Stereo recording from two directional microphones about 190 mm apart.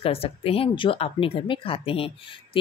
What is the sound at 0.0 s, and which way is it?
A woman's voice, 30° left (ahead or behind).